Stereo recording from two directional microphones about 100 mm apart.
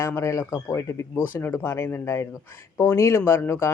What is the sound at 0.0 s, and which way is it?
Speech, 30° left (ahead or behind).